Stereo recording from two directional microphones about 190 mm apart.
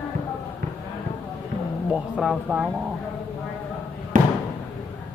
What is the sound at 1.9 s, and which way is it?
Speech, 5° right (ahead or behind).